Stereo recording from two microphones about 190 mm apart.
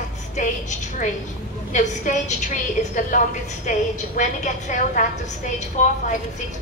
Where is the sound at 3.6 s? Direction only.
45° left (ahead or behind).